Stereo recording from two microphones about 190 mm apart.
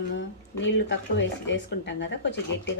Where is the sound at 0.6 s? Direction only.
70° left (ahead or behind).